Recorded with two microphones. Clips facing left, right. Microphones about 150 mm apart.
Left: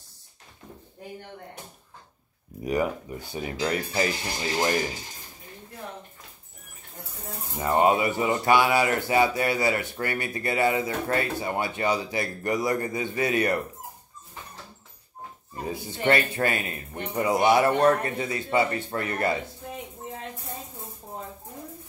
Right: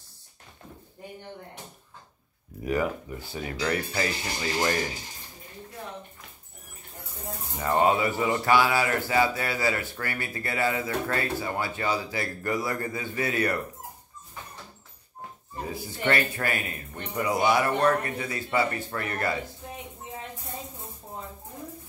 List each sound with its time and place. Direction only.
2.6 s speech: 20° left (ahead or behind)
7.5 s speech: 15° left (ahead or behind)
15.7 s speech: 25° left (ahead or behind)